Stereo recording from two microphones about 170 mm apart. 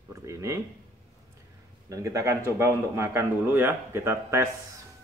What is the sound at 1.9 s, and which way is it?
Speech, 20° right (ahead or behind).